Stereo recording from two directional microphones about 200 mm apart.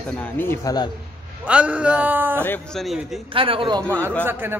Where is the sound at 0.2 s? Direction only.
10° left (ahead or behind).